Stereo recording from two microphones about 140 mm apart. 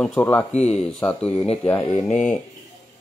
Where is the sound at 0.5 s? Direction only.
50° left (ahead or behind).